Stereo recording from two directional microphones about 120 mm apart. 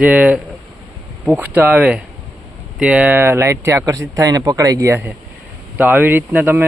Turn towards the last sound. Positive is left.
turn(degrees=-15)  # may be behind; listen again after turning